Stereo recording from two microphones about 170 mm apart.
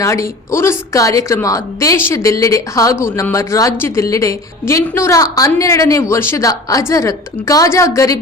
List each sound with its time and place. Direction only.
0.0 s a woman's voice: 15° left (ahead or behind)